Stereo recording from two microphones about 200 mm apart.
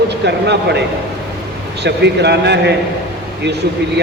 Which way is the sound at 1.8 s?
55° right (ahead or behind).